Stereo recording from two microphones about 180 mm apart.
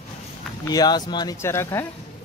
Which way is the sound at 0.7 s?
20° left (ahead or behind).